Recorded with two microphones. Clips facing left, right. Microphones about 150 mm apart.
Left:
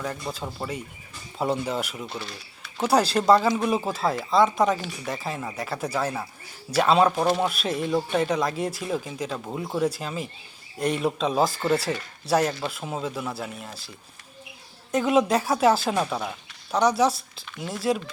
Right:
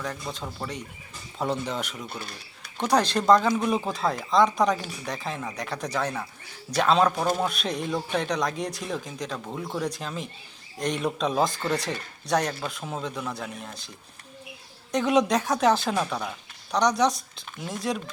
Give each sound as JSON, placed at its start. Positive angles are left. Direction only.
{"t": 0.0, "sound": "speech", "side_deg": 5}
{"t": 2.1, "sound": "speech", "side_deg": -50}
{"t": 2.7, "sound": "speech", "side_deg": 5}
{"t": 14.9, "sound": "speech", "side_deg": 5}